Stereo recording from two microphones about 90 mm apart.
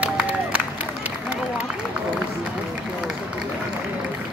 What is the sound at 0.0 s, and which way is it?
Crowd, 15° right (ahead or behind).